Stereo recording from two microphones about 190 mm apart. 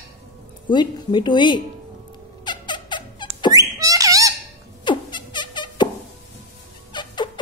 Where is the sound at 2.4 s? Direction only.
25° left (ahead or behind).